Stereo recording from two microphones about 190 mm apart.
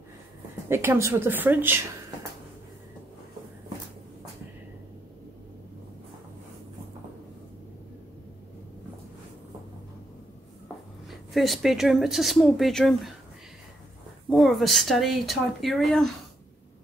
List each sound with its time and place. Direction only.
0.7 s a woman's voice: 15° right (ahead or behind)
11.1 s speech: centre (ahead or behind)
14.3 s speech: centre (ahead or behind)